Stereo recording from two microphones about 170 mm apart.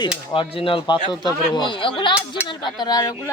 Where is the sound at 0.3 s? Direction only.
30° left (ahead or behind).